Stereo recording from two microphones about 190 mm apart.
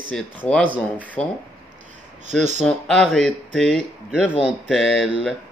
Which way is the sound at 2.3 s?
40° right (ahead or behind).